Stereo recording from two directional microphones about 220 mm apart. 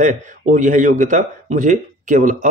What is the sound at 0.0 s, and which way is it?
A man's voice, 35° right (ahead or behind).